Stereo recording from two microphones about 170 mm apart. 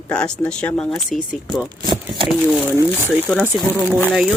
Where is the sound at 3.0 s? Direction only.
5° left (ahead or behind).